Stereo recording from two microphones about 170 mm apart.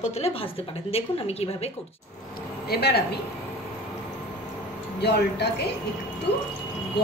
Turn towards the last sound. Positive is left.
turn(degrees=75)  # may be behind; listen again after turning